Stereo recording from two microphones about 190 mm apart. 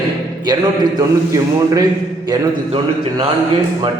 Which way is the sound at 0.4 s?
20° right (ahead or behind).